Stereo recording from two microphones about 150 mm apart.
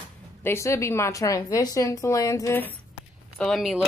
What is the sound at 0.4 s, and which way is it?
A woman's voice, 15° left (ahead or behind).